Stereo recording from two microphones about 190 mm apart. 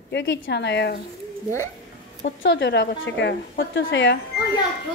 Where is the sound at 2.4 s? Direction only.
70° left (ahead or behind).